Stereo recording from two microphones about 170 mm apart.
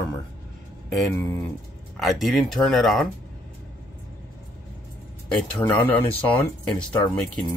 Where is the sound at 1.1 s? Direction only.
15° left (ahead or behind).